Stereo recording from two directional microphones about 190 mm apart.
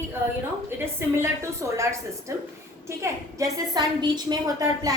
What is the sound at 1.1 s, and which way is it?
Speech, 15° right (ahead or behind).